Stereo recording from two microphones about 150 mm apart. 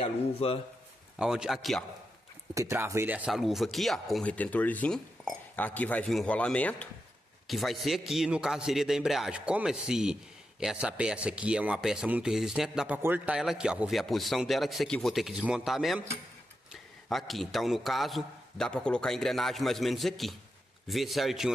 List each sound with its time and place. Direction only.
0.0 s a man's voice: 40° left (ahead or behind)
1.1 s speech: 5° right (ahead or behind)
2.5 s speech: 20° right (ahead or behind); by 16.0 s centre (ahead or behind)
17.1 s speech: centre (ahead or behind)